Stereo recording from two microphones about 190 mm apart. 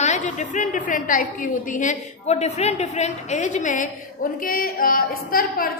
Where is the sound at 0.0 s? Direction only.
40° left (ahead or behind).